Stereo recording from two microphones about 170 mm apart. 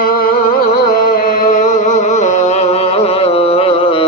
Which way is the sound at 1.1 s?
55° left (ahead or behind).